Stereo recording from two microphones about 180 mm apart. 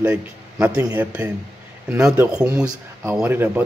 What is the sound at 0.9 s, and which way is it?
Speech, 10° right (ahead or behind).